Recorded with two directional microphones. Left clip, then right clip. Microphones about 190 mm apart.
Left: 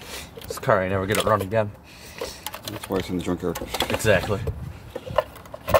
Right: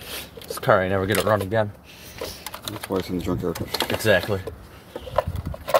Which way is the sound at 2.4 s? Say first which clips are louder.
Even; 10° left (ahead or behind).